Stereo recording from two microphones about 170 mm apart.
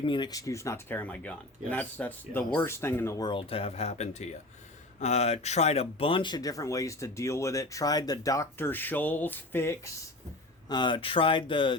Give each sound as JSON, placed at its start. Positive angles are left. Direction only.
{"t": 0.0, "sound": "speech", "side_deg": 30}
{"t": 10.7, "sound": "speech", "side_deg": 25}